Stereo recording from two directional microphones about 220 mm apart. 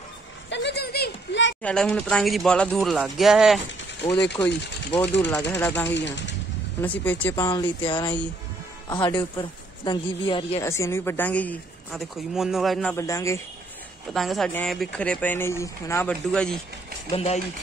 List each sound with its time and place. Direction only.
0.5 s a sound: 50° left (ahead or behind)
1.6 s speech: 5° left (ahead or behind)
5.9 s speech: 55° left (ahead or behind)
6.8 s speech: 10° left (ahead or behind)
10.7 s speech: 10° left (ahead or behind)
12.9 s speech: 15° left (ahead or behind)
14.1 s speech: centre (ahead or behind)
17.1 s speech: 25° left (ahead or behind)